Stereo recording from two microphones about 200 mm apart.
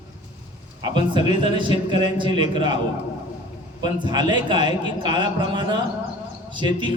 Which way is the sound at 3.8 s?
20° right (ahead or behind).